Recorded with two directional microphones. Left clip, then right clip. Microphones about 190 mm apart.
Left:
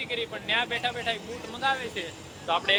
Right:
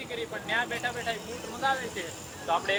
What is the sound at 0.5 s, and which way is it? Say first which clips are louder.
Speech: left 3 dB; centre (ahead or behind).